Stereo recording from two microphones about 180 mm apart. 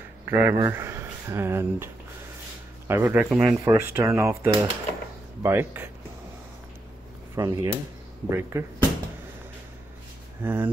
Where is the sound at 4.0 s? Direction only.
15° right (ahead or behind).